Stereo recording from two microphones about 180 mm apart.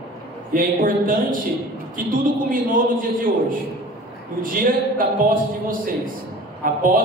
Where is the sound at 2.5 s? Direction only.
50° right (ahead or behind).